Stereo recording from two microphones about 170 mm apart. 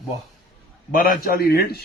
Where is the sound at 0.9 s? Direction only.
60° left (ahead or behind).